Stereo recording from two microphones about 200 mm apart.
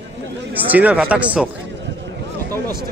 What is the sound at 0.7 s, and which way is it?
Speech, 5° right (ahead or behind).